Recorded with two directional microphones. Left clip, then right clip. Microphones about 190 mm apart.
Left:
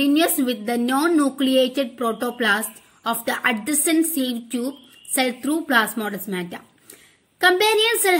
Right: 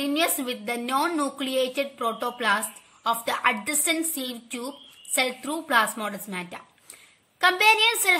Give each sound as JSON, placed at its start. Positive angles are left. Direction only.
{"t": 0.0, "sound": "a woman's voice", "side_deg": 20}